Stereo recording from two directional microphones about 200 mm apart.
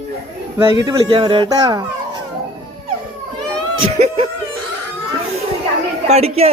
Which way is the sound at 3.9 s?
35° right (ahead or behind).